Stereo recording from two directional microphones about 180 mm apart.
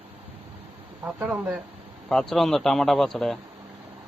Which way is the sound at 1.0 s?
10° right (ahead or behind).